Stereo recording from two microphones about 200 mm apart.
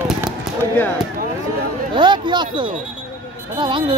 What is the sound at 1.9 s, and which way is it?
Speech, 25° right (ahead or behind).